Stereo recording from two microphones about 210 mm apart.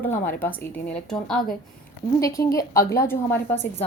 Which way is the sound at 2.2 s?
15° left (ahead or behind).